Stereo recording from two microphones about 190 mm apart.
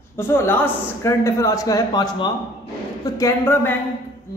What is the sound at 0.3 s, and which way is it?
A man's voice, 10° left (ahead or behind).